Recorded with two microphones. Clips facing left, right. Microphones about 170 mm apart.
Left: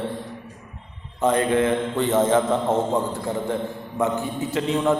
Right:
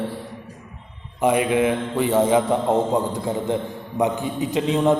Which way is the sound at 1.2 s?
10° right (ahead or behind).